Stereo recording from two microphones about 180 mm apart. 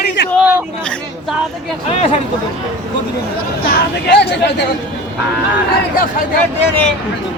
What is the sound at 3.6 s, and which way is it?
Speech, 65° left (ahead or behind).